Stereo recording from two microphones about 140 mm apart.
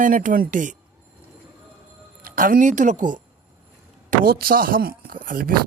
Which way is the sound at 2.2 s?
90° right.